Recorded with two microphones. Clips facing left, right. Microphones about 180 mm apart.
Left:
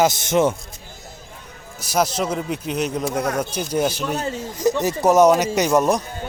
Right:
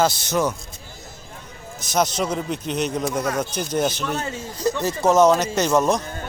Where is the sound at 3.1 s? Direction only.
55° left (ahead or behind).